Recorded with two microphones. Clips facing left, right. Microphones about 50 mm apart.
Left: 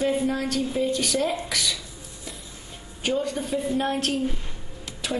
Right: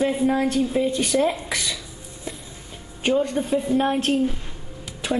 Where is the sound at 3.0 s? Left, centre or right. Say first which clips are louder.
Right 5 dB; right.